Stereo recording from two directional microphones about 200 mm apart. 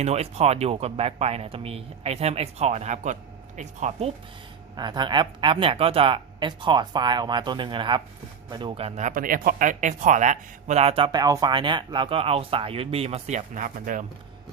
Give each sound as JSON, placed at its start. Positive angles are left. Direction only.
{"t": 0.0, "sound": "speech", "side_deg": -30}
{"t": 4.8, "sound": "speech", "side_deg": -20}